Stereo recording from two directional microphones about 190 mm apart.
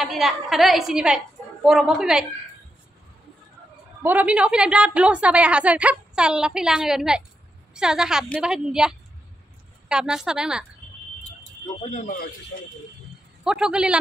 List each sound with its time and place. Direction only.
0.0 s a woman's voice: centre (ahead or behind)
4.0 s a woman's voice: 10° right (ahead or behind)
11.8 s a man's voice: 40° left (ahead or behind)
13.4 s a man's voice: 5° right (ahead or behind)